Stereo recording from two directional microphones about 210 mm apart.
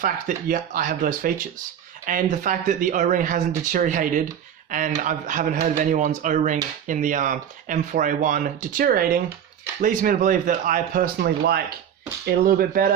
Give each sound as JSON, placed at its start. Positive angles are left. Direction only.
{"t": 0.0, "sound": "speech", "side_deg": -40}